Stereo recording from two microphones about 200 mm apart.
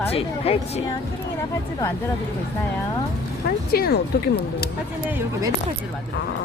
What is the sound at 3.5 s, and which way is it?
Speech, 50° left (ahead or behind).